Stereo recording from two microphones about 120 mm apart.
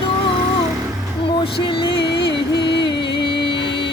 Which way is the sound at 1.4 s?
45° left (ahead or behind).